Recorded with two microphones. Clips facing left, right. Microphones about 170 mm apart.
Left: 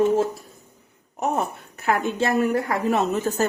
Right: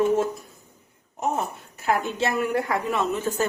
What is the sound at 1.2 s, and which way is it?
A woman's voice, 65° left (ahead or behind).